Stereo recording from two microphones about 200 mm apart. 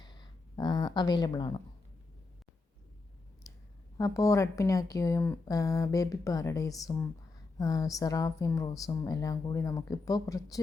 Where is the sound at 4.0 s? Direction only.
15° left (ahead or behind).